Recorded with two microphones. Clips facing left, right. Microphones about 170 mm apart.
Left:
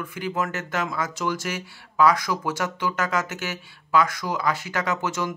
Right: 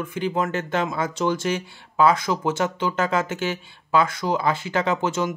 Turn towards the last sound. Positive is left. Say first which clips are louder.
# right 4 dB
turn(degrees=-25)  # may be behind; listen again after turning